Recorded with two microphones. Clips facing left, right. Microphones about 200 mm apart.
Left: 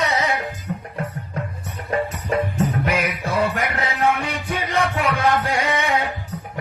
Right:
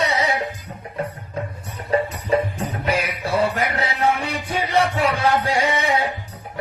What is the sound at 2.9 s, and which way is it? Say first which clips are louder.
Music: right 1 dB; 30° right (ahead or behind).